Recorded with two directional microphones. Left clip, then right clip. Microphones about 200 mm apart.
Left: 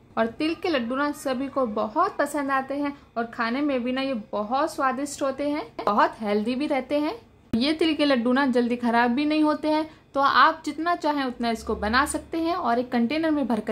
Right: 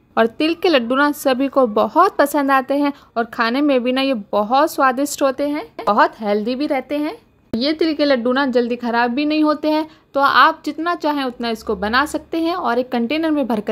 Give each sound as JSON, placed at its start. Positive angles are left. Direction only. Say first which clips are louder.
{"t": 0.1, "sound": "a woman's voice", "louder": "right 9 dB", "side_deg": -40}